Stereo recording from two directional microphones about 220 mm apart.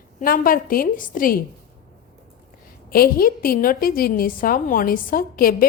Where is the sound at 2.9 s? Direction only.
40° left (ahead or behind).